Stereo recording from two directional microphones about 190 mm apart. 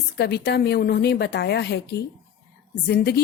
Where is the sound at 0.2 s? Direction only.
60° left (ahead or behind).